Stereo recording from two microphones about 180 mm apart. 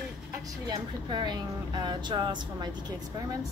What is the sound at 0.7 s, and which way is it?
Speech, 25° right (ahead or behind).